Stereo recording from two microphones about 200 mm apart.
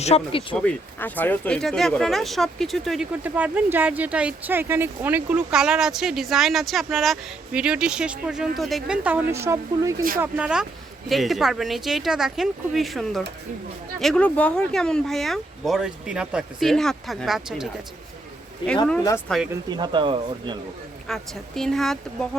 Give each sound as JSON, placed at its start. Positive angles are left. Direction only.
{"t": 0.0, "sound": "speech", "side_deg": 30}
{"t": 0.5, "sound": "speech", "side_deg": 5}
{"t": 18.6, "sound": "speech", "side_deg": 20}
{"t": 19.3, "sound": "speech", "side_deg": 5}
{"t": 19.7, "sound": "speech", "side_deg": -25}
{"t": 21.1, "sound": "speech", "side_deg": 0}